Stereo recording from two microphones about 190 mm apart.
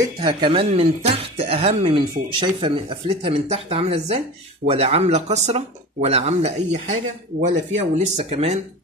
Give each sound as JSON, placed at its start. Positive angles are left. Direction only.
{"t": 0.2, "sound": "speech", "side_deg": -25}